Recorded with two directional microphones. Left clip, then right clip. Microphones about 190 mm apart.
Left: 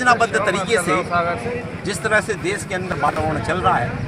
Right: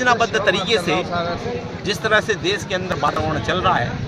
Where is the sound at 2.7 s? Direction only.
5° right (ahead or behind).